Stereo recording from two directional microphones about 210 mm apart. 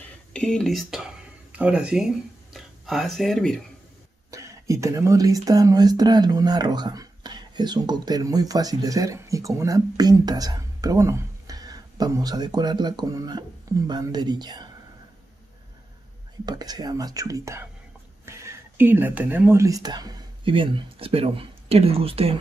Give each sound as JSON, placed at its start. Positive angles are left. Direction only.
{"t": 0.3, "sound": "speech", "side_deg": 5}
{"t": 4.3, "sound": "speech", "side_deg": -15}
{"t": 16.4, "sound": "speech", "side_deg": -20}